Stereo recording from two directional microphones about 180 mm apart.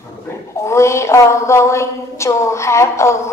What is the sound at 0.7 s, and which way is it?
A woman's voice, 15° left (ahead or behind).